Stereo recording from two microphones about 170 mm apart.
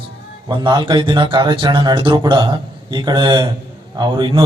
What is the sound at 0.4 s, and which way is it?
A man's voice, 25° right (ahead or behind).